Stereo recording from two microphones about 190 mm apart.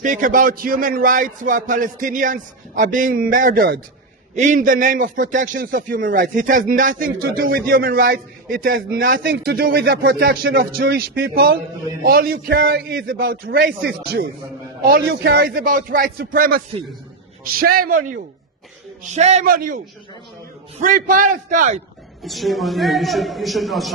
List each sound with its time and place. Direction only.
0.0 s speech: 45° right (ahead or behind)
9.2 s a man's voice: 60° right (ahead or behind)
20.8 s speech: 45° right (ahead or behind)
22.2 s a man's voice: centre (ahead or behind)